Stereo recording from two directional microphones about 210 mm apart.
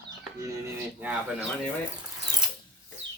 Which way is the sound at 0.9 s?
5° right (ahead or behind).